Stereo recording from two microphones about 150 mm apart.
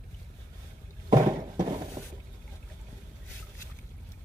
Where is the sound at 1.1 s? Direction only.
25° right (ahead or behind).